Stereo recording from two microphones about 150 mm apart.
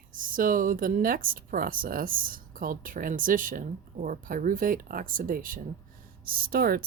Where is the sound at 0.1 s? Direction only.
65° right (ahead or behind).